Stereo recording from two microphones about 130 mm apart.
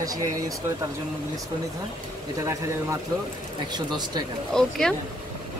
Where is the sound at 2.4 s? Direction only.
25° right (ahead or behind).